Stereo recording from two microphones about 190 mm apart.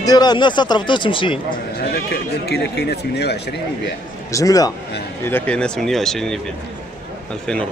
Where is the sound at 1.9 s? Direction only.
60° left (ahead or behind).